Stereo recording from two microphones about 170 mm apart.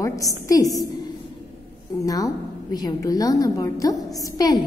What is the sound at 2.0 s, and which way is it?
A woman's voice, 20° left (ahead or behind).